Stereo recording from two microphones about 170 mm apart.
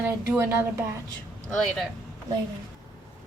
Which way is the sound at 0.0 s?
10° right (ahead or behind).